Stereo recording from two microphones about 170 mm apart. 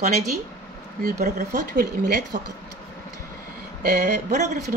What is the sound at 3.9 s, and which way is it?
Speech, 45° right (ahead or behind).